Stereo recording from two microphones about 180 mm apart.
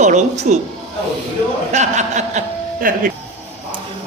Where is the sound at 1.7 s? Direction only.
40° right (ahead or behind).